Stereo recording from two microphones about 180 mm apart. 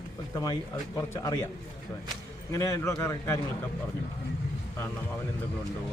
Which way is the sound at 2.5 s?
15° left (ahead or behind).